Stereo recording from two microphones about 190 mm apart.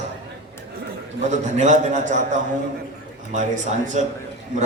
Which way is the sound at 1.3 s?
40° right (ahead or behind).